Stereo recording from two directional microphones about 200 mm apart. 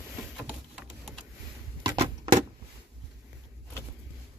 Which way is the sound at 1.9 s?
25° right (ahead or behind).